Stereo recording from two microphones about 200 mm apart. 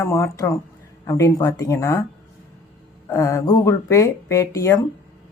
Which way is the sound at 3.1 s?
15° left (ahead or behind).